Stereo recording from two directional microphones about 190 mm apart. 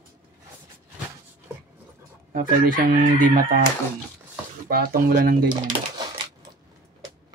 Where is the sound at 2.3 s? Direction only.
45° right (ahead or behind).